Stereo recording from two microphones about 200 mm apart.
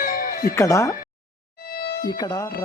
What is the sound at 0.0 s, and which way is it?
Music, 45° left (ahead or behind).